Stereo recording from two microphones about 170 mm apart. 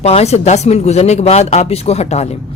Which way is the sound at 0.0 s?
40° left (ahead or behind).